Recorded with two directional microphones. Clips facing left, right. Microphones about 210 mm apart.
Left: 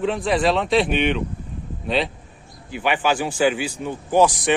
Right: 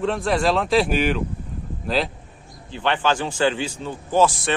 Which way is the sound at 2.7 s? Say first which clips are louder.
Left 1 dB; 10° left (ahead or behind).